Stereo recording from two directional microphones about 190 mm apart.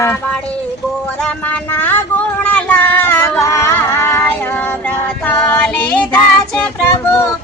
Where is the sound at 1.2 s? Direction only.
5° left (ahead or behind).